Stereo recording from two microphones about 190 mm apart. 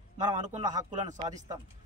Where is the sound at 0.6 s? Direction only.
20° right (ahead or behind).